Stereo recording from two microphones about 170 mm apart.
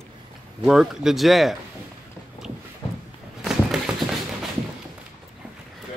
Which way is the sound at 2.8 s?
30° left (ahead or behind).